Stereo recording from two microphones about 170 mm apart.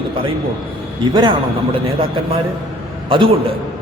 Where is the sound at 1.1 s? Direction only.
30° right (ahead or behind).